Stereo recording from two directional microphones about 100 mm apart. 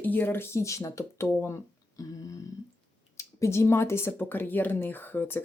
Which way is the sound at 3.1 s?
30° left (ahead or behind).